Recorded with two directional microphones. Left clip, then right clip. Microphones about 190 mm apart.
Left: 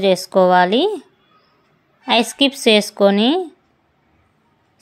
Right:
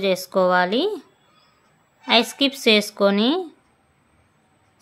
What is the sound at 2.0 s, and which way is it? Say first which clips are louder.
A woman's voice: left 3 dB; 15° left (ahead or behind).